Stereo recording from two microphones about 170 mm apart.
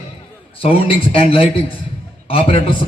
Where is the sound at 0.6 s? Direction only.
35° left (ahead or behind).